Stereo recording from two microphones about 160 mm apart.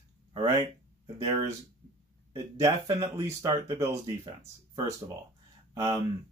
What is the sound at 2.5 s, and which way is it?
Speech, 20° right (ahead or behind).